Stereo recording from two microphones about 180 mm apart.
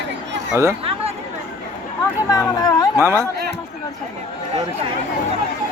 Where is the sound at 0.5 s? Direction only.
10° right (ahead or behind).